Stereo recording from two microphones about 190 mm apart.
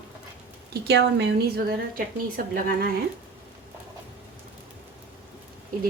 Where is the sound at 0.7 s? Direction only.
65° right (ahead or behind).